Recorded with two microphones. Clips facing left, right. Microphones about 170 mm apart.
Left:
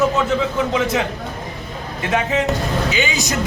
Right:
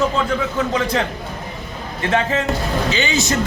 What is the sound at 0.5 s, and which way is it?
Speech, 15° left (ahead or behind).